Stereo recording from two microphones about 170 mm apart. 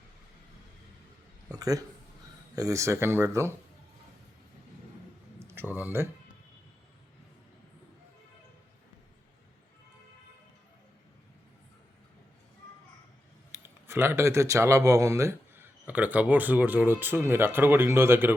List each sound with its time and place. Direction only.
1.5 s speech: 20° right (ahead or behind)
5.4 s speech: 10° right (ahead or behind)
13.6 s speech: 15° right (ahead or behind)